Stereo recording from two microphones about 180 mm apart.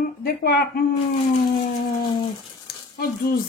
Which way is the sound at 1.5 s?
25° left (ahead or behind).